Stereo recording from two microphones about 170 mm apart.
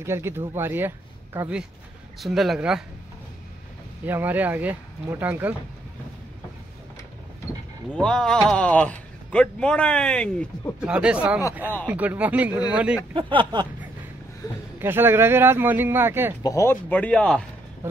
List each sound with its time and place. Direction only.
0.0 s speech: 15° right (ahead or behind)
2.1 s speech: centre (ahead or behind)
4.0 s speech: 10° right (ahead or behind)
7.9 s speech: 5° left (ahead or behind)
10.8 s speech: 5° right (ahead or behind)
13.3 s a sound: 30° right (ahead or behind)
14.4 s speech: 25° left (ahead or behind)
14.8 s speech: 15° right (ahead or behind)
16.4 s speech: 15° left (ahead or behind)